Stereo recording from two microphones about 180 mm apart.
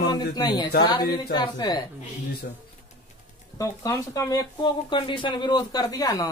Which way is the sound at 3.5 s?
20° left (ahead or behind).